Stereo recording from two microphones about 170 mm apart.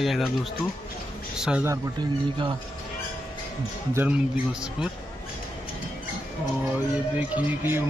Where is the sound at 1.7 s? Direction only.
25° right (ahead or behind).